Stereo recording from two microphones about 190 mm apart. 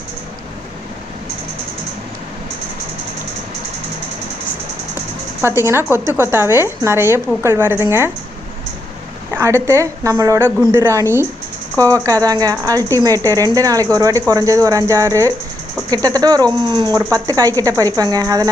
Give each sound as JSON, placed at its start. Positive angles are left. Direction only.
{"t": 5.4, "sound": "a woman's voice", "side_deg": -15}
{"t": 9.3, "sound": "a woman's voice", "side_deg": -10}